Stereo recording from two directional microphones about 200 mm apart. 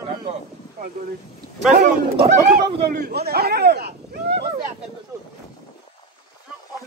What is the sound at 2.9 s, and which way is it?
A man's voice, 50° right (ahead or behind).